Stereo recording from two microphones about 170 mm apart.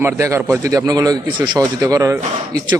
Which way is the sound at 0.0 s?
15° right (ahead or behind).